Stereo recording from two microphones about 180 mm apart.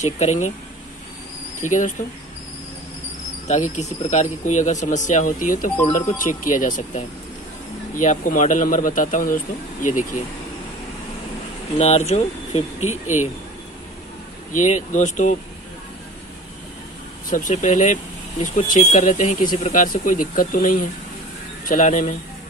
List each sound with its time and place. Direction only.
0.0 s speech: 40° left (ahead or behind)
1.6 s speech: 45° left (ahead or behind)
3.4 s speech: 40° left (ahead or behind)
11.8 s speech: 40° left (ahead or behind)
14.5 s speech: 45° left (ahead or behind)
17.3 s speech: 45° left (ahead or behind)